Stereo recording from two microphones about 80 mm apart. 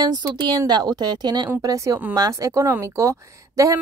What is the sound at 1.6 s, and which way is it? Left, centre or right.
A woman's voice, right.